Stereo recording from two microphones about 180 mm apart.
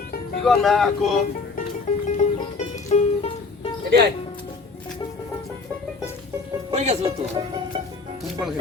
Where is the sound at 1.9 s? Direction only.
45° left (ahead or behind).